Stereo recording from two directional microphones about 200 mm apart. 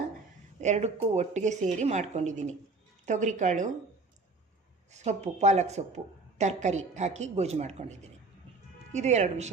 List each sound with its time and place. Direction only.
0.6 s speech: 35° right (ahead or behind)
4.9 s speech: 35° right (ahead or behind)